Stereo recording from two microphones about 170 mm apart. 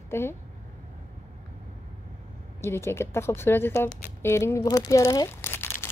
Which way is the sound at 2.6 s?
15° left (ahead or behind).